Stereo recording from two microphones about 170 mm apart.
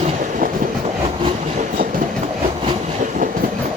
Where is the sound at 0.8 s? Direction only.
35° right (ahead or behind); by 2.1 s 50° right (ahead or behind).